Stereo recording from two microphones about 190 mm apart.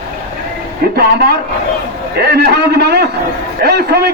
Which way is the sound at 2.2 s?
55° right (ahead or behind).